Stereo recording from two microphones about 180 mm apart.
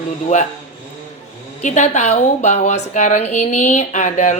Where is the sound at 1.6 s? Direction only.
40° left (ahead or behind).